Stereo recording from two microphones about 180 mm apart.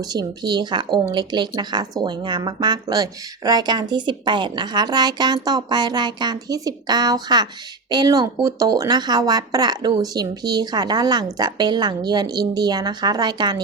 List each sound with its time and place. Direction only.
0.0 s speech: 20° right (ahead or behind)